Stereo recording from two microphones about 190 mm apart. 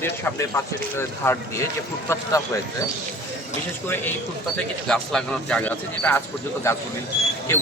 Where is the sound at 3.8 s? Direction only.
10° left (ahead or behind).